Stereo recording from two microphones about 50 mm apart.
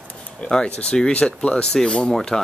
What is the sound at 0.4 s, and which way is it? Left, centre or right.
Speech, centre.